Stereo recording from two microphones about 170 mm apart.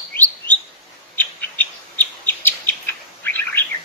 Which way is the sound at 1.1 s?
10° left (ahead or behind).